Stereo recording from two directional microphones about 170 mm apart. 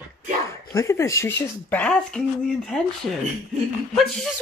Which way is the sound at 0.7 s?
15° left (ahead or behind).